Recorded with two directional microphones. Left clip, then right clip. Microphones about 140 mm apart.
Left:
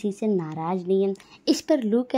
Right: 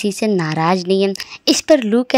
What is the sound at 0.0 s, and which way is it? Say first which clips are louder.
Speech: right 8 dB; 20° right (ahead or behind).